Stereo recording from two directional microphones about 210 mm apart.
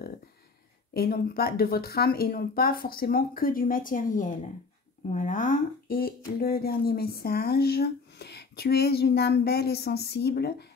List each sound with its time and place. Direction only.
0.9 s speech: 45° left (ahead or behind)